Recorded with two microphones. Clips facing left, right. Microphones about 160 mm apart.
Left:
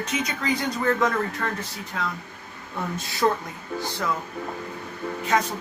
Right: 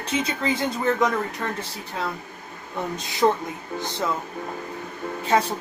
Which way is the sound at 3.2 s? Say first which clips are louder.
Right 3 dB; 25° right (ahead or behind).